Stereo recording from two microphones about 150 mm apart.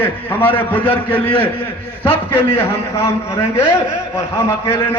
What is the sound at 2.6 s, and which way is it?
A man's voice, 15° left (ahead or behind).